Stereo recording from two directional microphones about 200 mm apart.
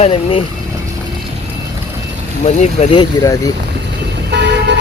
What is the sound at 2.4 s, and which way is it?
Speech, 35° left (ahead or behind).